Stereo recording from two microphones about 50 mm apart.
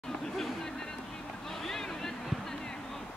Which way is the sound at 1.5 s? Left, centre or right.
Centre.